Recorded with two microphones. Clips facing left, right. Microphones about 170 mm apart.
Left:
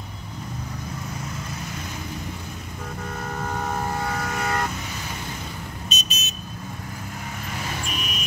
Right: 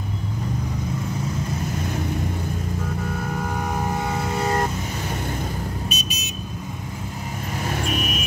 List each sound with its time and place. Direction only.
3.3 s vehicle: 10° right (ahead or behind); by 4.6 s 25° right (ahead or behind)
5.9 s vehicle: 10° right (ahead or behind)
7.8 s vehicle: 50° right (ahead or behind)